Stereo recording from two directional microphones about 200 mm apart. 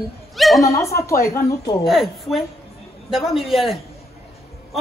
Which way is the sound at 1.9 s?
Centre (ahead or behind).